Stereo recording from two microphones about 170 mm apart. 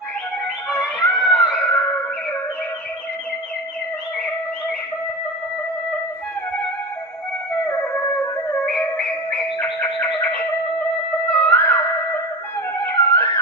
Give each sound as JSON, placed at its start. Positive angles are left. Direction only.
{"t": 0.4, "sound": "music", "side_deg": 5}
{"t": 7.7, "sound": "music", "side_deg": 10}
{"t": 11.5, "sound": "theremin", "side_deg": 10}
{"t": 12.8, "sound": "music", "side_deg": 15}